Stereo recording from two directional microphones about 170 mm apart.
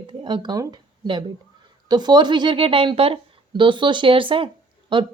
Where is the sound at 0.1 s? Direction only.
30° right (ahead or behind).